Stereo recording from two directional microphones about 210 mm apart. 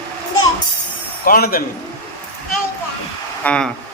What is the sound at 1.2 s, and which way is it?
Speech, 45° left (ahead or behind).